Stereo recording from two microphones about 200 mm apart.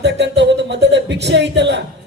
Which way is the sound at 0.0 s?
60° right (ahead or behind).